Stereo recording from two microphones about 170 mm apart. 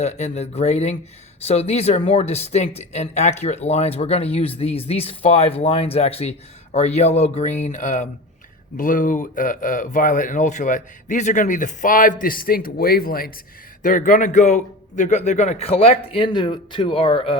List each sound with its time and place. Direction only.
0.0 s speech: 40° left (ahead or behind)